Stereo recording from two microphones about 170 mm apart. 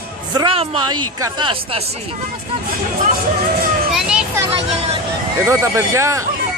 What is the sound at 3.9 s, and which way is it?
Children playing, 5° right (ahead or behind).